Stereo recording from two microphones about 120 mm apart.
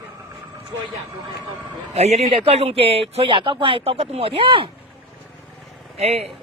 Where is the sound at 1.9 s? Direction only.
60° right (ahead or behind).